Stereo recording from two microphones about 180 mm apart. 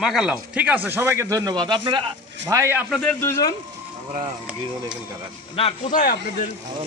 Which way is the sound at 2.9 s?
5° left (ahead or behind).